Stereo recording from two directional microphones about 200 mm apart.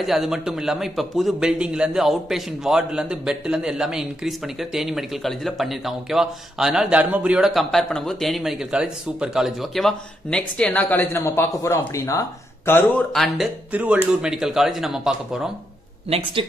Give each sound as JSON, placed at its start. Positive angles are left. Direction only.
{"t": 0.0, "sound": "a man's voice", "side_deg": 0}
{"t": 16.1, "sound": "speech", "side_deg": -25}